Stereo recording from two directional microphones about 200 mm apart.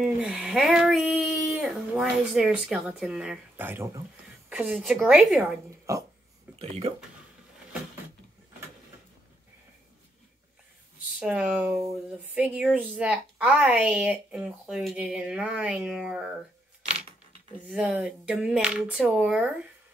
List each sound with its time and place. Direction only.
0.0 s speech: centre (ahead or behind)
5.9 s speech: 15° right (ahead or behind)
11.1 s speech: 5° right (ahead or behind)
17.6 s speech: 5° right (ahead or behind)